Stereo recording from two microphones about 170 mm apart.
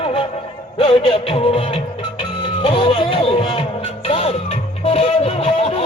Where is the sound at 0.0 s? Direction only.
35° left (ahead or behind).